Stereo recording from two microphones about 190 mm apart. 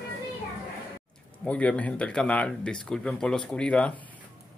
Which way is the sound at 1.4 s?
5° left (ahead or behind).